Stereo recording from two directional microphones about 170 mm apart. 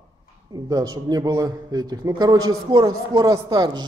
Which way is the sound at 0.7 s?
20° right (ahead or behind).